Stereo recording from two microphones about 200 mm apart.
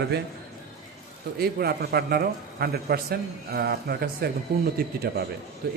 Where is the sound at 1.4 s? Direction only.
50° right (ahead or behind).